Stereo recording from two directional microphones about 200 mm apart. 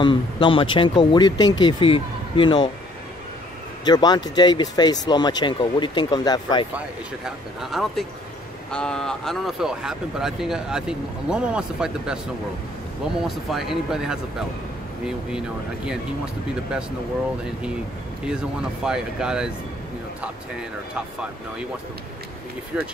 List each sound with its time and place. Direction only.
0.0 s speech: 25° left (ahead or behind)
3.8 s speech: 20° left (ahead or behind)
7.2 s speech: centre (ahead or behind)
13.2 s speech: centre (ahead or behind)
18.2 s speech: 5° right (ahead or behind)
20.9 s speech: 5° right (ahead or behind)
22.7 s speech: 5° right (ahead or behind)